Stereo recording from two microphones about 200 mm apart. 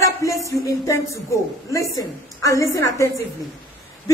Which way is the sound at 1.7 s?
15° left (ahead or behind).